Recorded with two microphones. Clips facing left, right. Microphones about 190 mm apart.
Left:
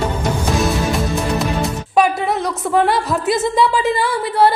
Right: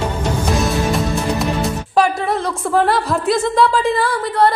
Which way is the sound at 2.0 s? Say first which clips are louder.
Left 1 dB; centre (ahead or behind).